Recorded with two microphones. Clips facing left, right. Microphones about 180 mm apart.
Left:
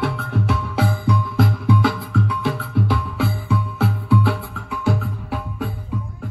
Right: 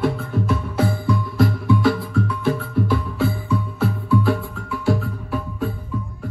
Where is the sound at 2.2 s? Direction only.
75° left (ahead or behind).